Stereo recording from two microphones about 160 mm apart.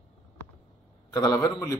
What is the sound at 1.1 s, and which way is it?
Speech, 20° left (ahead or behind).